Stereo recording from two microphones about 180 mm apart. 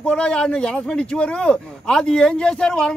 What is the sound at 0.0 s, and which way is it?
Speech, 5° left (ahead or behind).